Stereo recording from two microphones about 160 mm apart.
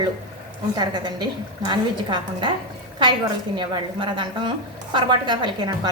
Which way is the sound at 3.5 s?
30° right (ahead or behind).